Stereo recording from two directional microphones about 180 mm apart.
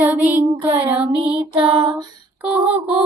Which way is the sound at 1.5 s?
30° right (ahead or behind).